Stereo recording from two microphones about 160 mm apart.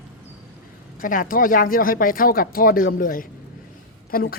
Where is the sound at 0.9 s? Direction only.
60° left (ahead or behind).